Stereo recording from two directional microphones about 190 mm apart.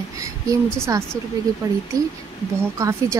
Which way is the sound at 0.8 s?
15° right (ahead or behind).